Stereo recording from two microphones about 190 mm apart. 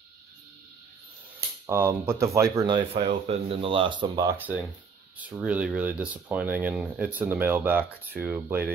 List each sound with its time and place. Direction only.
1.7 s speech: 15° right (ahead or behind)
2.9 s speech: 35° right (ahead or behind)
4.4 s speech: 10° right (ahead or behind)